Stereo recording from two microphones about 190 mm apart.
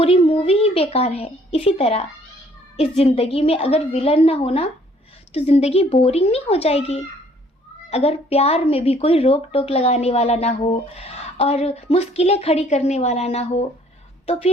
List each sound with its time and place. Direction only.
0.0 s a woman's voice: 30° left (ahead or behind)